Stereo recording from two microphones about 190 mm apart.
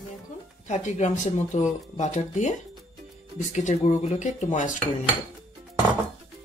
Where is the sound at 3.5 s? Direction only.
40° left (ahead or behind).